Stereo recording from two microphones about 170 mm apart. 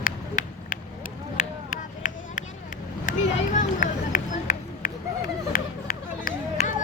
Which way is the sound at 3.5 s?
50° left (ahead or behind).